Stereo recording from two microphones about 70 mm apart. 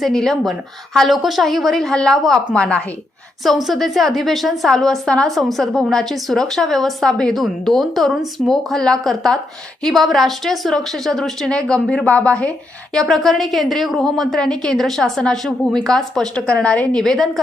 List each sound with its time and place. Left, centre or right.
0.0 s a woman's voice: centre
2.5 s a woman's voice: centre
3.4 s a woman's voice: centre
13.0 s a woman's voice: centre
17.0 s a woman's voice: centre